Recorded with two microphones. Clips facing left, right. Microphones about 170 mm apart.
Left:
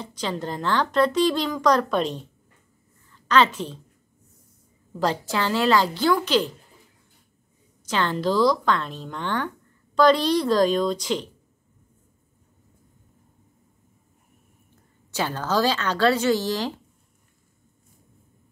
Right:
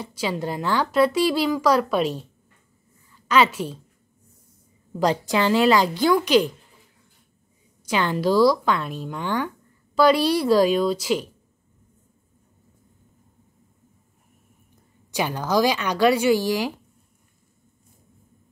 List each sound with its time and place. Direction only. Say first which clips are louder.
0.0 s a woman's voice: right 2 dB; 10° right (ahead or behind)
4.9 s speech: right 3 dB; 15° right (ahead or behind)
7.8 s speech: right 2 dB; 10° right (ahead or behind)
15.0 s speech: right 2 dB; 15° right (ahead or behind)